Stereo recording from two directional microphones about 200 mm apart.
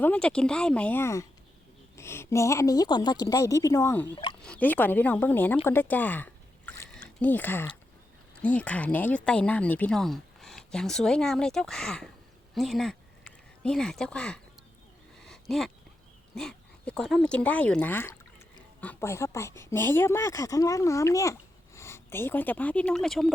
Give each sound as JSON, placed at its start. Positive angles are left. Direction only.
{"t": 0.0, "sound": "a woman's voice", "side_deg": 5}
{"t": 4.1, "sound": "speech", "side_deg": 25}
{"t": 4.4, "sound": "a woman's voice", "side_deg": 5}
{"t": 5.6, "sound": "a sound", "side_deg": 10}
{"t": 8.4, "sound": "speech", "side_deg": 5}
{"t": 15.2, "sound": "a sound", "side_deg": 0}
{"t": 16.3, "sound": "speech", "side_deg": 5}